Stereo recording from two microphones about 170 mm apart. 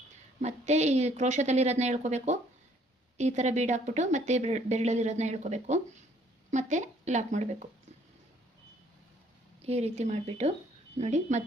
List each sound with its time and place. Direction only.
0.4 s a woman's voice: 40° right (ahead or behind)
9.6 s a woman's voice: 40° right (ahead or behind)